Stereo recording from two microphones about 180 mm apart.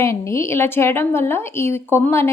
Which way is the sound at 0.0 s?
15° left (ahead or behind).